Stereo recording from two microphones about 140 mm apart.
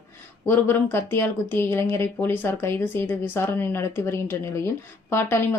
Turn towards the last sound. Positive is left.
turn(degrees=15)  # may be behind; listen again after turning